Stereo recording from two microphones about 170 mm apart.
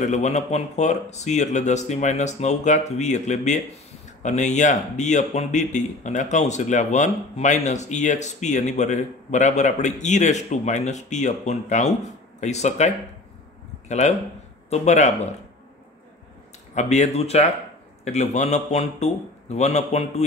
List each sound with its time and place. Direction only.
0.0 s a man's voice: 45° left (ahead or behind)
16.7 s a man's voice: 40° left (ahead or behind)